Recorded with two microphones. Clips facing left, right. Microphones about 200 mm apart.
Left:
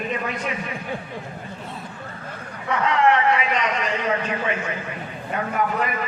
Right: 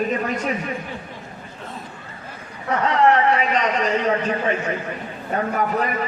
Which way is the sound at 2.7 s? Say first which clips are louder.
Right 2 dB; 40° right (ahead or behind).